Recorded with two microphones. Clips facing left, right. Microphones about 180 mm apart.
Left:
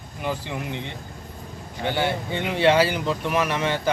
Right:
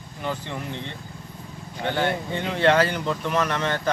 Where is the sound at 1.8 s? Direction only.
5° left (ahead or behind).